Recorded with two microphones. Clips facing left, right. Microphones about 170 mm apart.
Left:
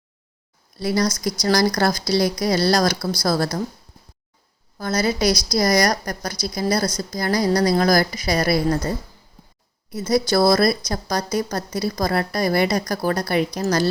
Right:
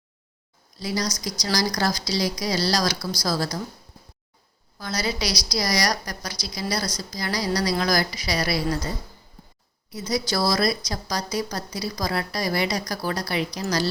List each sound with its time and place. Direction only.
0.8 s speech: 55° left (ahead or behind)
4.8 s a woman's voice: 50° left (ahead or behind)